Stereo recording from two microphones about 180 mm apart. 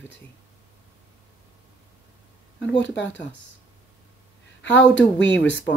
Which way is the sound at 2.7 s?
85° left.